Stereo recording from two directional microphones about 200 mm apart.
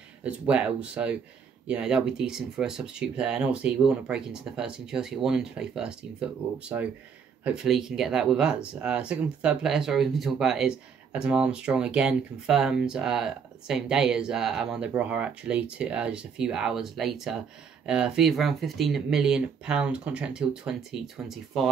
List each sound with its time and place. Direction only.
0.2 s speech: 5° right (ahead or behind)
7.4 s speech: 5° right (ahead or behind)